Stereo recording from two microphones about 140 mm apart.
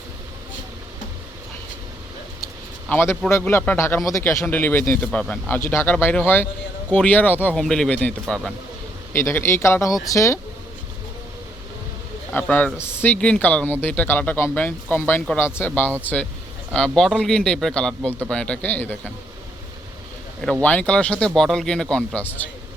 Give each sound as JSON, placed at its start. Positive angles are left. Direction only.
{"t": 2.9, "sound": "a man's voice", "side_deg": 15}
{"t": 9.1, "sound": "speech", "side_deg": 20}
{"t": 12.3, "sound": "a man's voice", "side_deg": 10}
{"t": 20.4, "sound": "speech", "side_deg": 10}